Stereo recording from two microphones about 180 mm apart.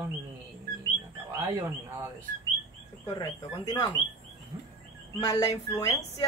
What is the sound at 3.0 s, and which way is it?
Speech, 20° left (ahead or behind).